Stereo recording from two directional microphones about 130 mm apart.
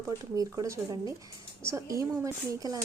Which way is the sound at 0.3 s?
25° right (ahead or behind).